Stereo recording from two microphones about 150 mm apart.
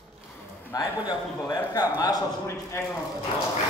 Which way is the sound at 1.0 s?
25° left (ahead or behind).